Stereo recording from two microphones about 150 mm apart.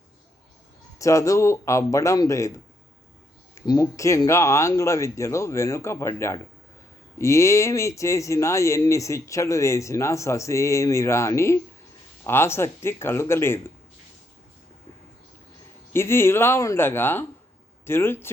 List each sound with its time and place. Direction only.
0.9 s speech: 20° left (ahead or behind)
3.5 s speech: 20° left (ahead or behind)
15.9 s speech: 15° left (ahead or behind)